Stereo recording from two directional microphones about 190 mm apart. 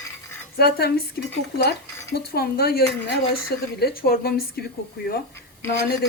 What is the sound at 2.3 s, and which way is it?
Speech, 55° left (ahead or behind).